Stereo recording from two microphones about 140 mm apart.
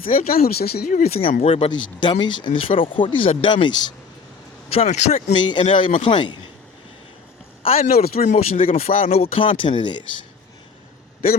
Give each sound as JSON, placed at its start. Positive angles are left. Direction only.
{"t": 0.2, "sound": "speech", "side_deg": 90}
{"t": 1.0, "sound": "speech", "side_deg": 45}
{"t": 4.7, "sound": "speech", "side_deg": 45}
{"t": 7.6, "sound": "speech", "side_deg": 45}